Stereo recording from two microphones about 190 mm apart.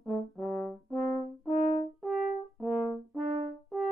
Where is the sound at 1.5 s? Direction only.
35° left (ahead or behind).